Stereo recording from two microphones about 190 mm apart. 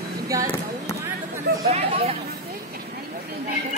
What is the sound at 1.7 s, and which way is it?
Hubbub, 35° right (ahead or behind).